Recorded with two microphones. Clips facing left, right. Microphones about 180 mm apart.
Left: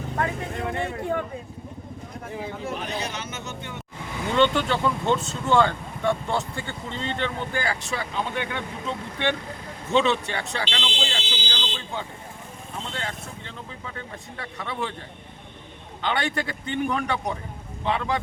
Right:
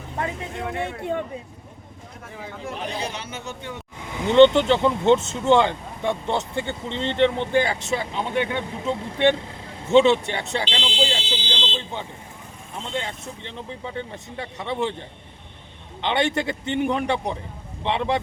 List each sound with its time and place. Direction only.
2.8 s a man's voice: 30° right (ahead or behind)
4.0 s speech: 20° right (ahead or behind)
9.9 s fire alarm: 20° right (ahead or behind)
12.9 s speech: 20° right (ahead or behind)
16.0 s speech: 25° right (ahead or behind)